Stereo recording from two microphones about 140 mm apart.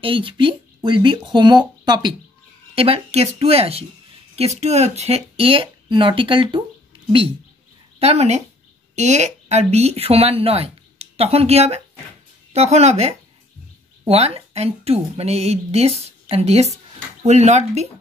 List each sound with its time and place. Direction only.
0.0 s speech: 40° right (ahead or behind)
2.7 s speech: 45° right (ahead or behind)
8.0 s speech: 50° right (ahead or behind)